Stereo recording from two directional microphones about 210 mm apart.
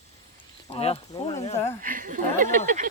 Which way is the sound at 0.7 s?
30° left (ahead or behind).